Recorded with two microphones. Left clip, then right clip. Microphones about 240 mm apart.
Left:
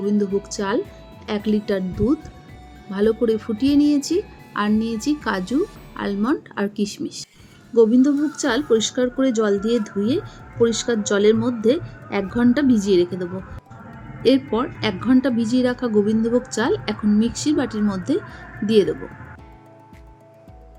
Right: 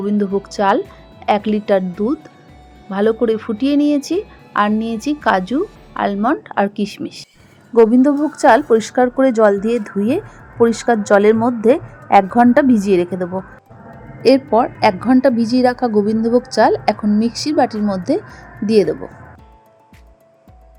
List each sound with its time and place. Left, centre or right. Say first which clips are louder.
0.0 s a woman's voice: right 3 dB; centre
17.8 s speech: right 5 dB; centre
18.6 s a woman's voice: right 4 dB; centre